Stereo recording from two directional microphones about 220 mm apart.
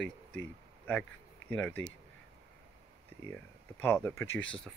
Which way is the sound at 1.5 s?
5° left (ahead or behind).